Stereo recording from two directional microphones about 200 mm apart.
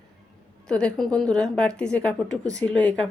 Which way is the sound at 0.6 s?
5° left (ahead or behind).